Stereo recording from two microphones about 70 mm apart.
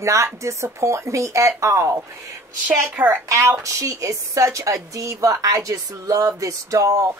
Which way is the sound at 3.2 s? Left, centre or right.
Right.